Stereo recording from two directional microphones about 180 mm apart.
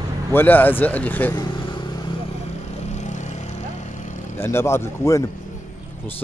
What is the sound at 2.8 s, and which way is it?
Vehicle, 40° left (ahead or behind).